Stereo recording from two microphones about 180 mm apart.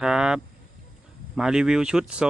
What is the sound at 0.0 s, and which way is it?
Speech, 5° right (ahead or behind).